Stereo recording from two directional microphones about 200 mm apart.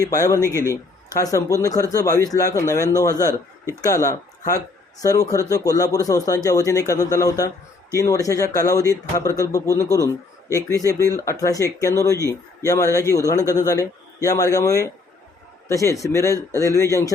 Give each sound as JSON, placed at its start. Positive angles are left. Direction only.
{"t": 0.1, "sound": "speech", "side_deg": 15}
{"t": 0.3, "sound": "a man's voice", "side_deg": -15}
{"t": 1.1, "sound": "speech", "side_deg": 15}
{"t": 3.8, "sound": "speech", "side_deg": 15}
{"t": 16.3, "sound": "a man's voice", "side_deg": -15}
{"t": 16.6, "sound": "speech", "side_deg": 15}